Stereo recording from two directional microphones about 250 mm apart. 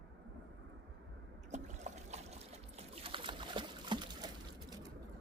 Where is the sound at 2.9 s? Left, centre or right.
Right.